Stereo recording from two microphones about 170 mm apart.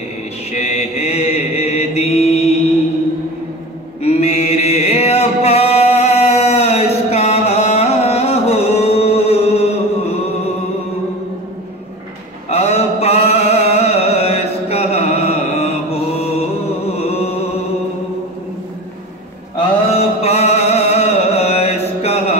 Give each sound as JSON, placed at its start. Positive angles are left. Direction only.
{"t": 0.5, "sound": "chant", "side_deg": 40}
{"t": 4.0, "sound": "a sound", "side_deg": 40}
{"t": 12.4, "sound": "music", "side_deg": 40}
{"t": 20.0, "sound": "music", "side_deg": 40}